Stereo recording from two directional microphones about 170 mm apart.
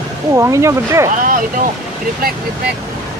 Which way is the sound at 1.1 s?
55° right (ahead or behind).